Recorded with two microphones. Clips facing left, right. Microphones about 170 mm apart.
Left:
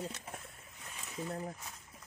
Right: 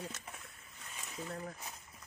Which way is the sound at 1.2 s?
30° left (ahead or behind).